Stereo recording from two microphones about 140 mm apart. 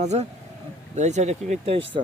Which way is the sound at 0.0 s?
55° right (ahead or behind).